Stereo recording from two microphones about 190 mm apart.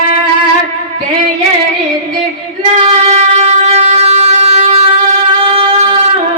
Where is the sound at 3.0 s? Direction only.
35° right (ahead or behind).